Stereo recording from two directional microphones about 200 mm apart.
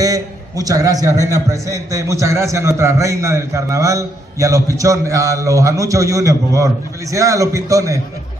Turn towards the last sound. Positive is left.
turn(degrees=-15)  # may be behind; listen again after turning